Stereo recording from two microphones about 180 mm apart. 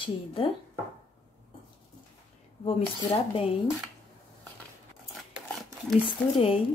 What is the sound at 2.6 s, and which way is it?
Speech, 30° left (ahead or behind).